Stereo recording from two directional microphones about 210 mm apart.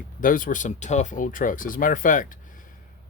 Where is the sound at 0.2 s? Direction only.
40° left (ahead or behind).